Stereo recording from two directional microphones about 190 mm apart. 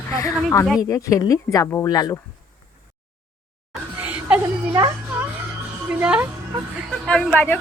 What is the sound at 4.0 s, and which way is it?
Laughter, 10° right (ahead or behind).